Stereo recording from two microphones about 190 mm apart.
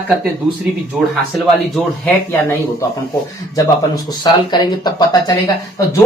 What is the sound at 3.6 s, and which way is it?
Speech, 20° left (ahead or behind).